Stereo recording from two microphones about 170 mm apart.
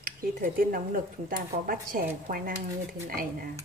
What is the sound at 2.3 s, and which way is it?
Dishes, 50° right (ahead or behind).